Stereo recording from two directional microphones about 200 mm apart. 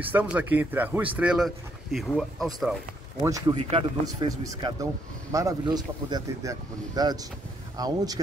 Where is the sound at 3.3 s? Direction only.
20° right (ahead or behind).